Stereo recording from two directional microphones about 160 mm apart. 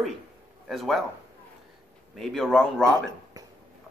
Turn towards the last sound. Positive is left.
turn(degrees=-20)  # may be behind; listen again after turning